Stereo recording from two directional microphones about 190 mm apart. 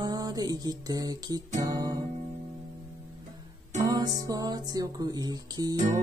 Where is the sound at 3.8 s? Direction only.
20° right (ahead or behind).